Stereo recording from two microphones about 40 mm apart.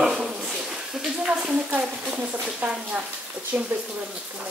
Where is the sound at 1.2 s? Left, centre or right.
Right.